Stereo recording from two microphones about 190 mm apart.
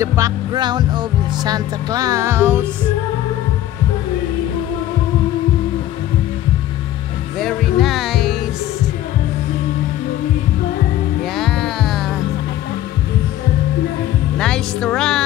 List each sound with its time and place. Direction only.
0.0 s music: 15° right (ahead or behind)
7.3 s music: centre (ahead or behind)
11.3 s music: centre (ahead or behind)
14.4 s speech: 5° left (ahead or behind)